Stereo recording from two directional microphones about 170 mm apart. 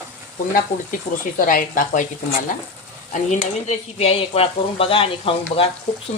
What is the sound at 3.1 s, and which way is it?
Speech, 40° left (ahead or behind).